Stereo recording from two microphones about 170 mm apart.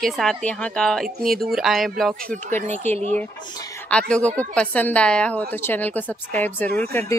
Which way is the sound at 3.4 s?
20° left (ahead or behind).